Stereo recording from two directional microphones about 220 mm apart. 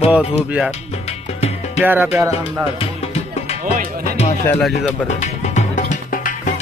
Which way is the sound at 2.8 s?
30° left (ahead or behind).